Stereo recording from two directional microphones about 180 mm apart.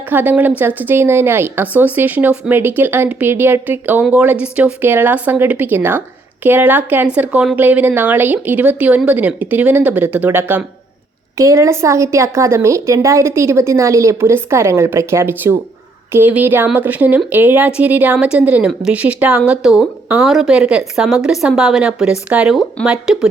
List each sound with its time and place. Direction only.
0.1 s speech: 10° right (ahead or behind)